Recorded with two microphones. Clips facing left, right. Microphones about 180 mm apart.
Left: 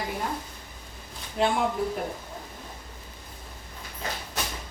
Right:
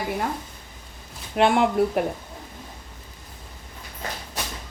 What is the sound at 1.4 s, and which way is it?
Speech, 75° right (ahead or behind).